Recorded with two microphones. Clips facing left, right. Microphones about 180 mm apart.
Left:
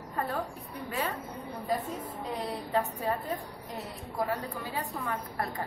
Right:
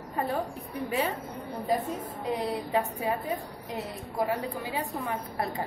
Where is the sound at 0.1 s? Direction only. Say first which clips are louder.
Right 3 dB; 15° right (ahead or behind).